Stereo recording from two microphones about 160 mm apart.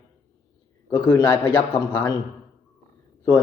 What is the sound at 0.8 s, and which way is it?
A man's voice, 25° left (ahead or behind).